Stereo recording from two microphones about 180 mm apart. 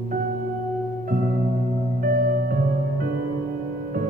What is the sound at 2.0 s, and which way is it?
Music, 50° right (ahead or behind).